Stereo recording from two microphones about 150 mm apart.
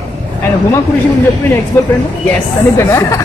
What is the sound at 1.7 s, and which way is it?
Speech, 15° left (ahead or behind).